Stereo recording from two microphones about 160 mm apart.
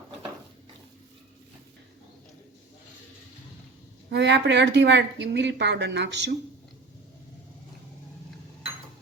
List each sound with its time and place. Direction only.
4.1 s speech: 90° right